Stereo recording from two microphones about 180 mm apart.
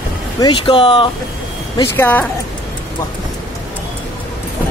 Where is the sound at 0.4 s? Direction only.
30° left (ahead or behind).